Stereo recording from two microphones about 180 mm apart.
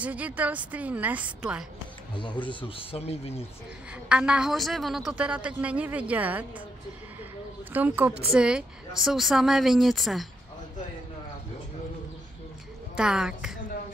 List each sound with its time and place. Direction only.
0.0 s a woman's voice: 10° right (ahead or behind)
2.4 s speech: 30° left (ahead or behind)
4.1 s a woman's voice: 5° right (ahead or behind)
7.7 s a woman's voice: 10° right (ahead or behind)
12.9 s a woman's voice: 5° right (ahead or behind)